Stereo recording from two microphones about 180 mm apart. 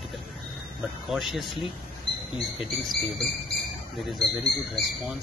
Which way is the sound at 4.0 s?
Centre (ahead or behind).